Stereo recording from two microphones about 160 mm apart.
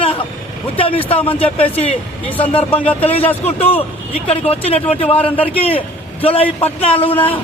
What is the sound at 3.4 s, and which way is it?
Speech, 40° left (ahead or behind).